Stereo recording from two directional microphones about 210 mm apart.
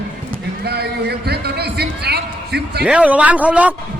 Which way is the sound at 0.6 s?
50° right (ahead or behind).